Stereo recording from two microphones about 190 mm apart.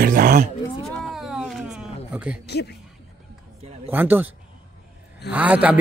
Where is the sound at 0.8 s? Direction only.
Centre (ahead or behind).